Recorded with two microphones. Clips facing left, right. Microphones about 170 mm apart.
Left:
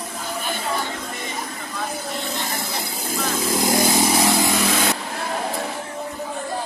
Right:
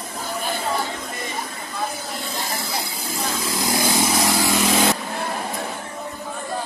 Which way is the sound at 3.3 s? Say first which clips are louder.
Left 4 dB; 45° left (ahead or behind).